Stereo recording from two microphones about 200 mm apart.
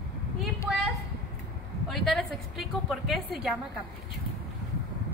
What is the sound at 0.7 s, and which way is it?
Speech, centre (ahead or behind).